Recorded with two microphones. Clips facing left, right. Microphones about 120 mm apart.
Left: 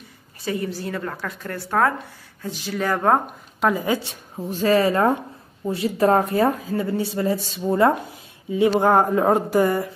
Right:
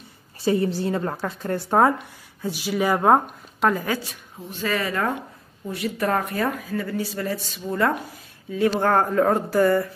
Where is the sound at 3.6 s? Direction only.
15° left (ahead or behind).